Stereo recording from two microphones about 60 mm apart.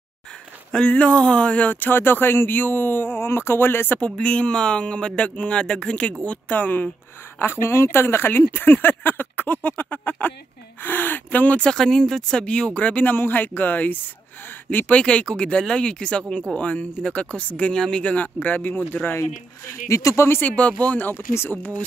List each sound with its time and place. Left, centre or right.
0.7 s speech: centre; by 4.0 s left
4.0 s speech: centre
7.3 s speech: left
11.6 s speech: centre; by 15.0 s left
15.0 s speech: centre
17.7 s speech: centre
18.0 s speech: left
19.9 s speech: left
20.2 s speech: left
20.5 s speech: left
21.1 s speech: left
21.5 s speech: left